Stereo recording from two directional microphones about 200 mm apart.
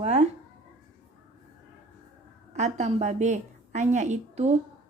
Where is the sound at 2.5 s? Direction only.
35° right (ahead or behind).